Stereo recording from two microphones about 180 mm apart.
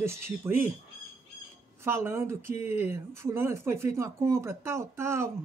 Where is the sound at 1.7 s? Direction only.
15° right (ahead or behind).